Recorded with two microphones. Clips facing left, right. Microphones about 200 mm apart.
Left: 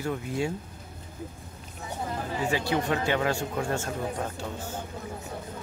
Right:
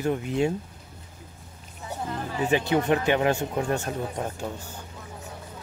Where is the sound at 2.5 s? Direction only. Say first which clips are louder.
Right 6 dB; 20° right (ahead or behind).